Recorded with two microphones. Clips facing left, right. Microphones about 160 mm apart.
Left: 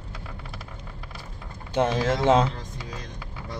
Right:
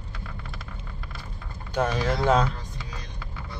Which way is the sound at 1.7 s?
25° left (ahead or behind).